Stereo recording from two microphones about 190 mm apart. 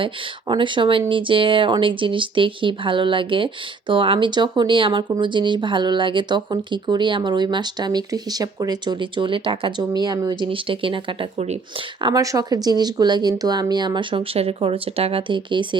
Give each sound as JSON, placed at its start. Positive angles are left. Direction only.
{"t": 0.0, "sound": "speech", "side_deg": -25}
{"t": 12.0, "sound": "speech", "side_deg": -20}